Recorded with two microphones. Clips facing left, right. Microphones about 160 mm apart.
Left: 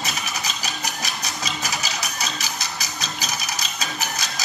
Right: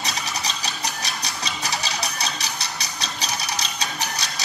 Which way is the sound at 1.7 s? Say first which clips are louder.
Right 1 dB; 35° right (ahead or behind).